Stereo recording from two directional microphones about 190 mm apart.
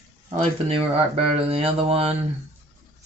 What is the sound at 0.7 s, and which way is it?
Speech, 30° right (ahead or behind).